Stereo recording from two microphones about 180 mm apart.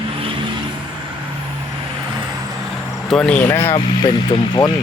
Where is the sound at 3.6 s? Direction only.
30° left (ahead or behind).